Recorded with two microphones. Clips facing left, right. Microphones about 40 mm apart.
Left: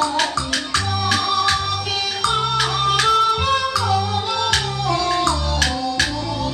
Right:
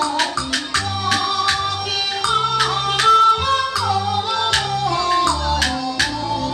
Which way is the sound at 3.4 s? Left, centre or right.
Centre.